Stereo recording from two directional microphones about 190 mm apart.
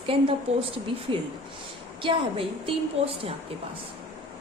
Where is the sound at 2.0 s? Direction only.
25° right (ahead or behind).